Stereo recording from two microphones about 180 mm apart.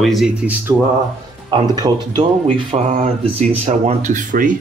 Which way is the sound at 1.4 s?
25° right (ahead or behind).